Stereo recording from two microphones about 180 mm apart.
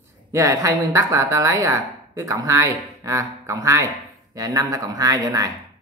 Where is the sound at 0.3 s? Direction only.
15° right (ahead or behind).